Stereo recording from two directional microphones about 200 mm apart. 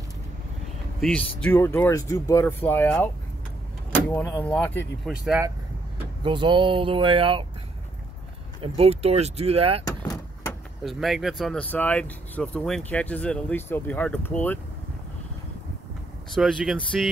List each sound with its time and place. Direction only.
1.0 s speech: 5° left (ahead or behind)
6.2 s speech: 25° right (ahead or behind)
8.6 s speech: 30° right (ahead or behind)
9.8 s vehicle: 20° left (ahead or behind)
10.8 s speech: centre (ahead or behind)
16.3 s speech: centre (ahead or behind)